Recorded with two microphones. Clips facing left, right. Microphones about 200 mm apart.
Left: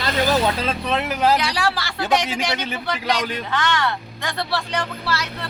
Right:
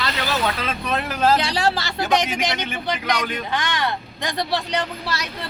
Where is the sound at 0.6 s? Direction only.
25° left (ahead or behind).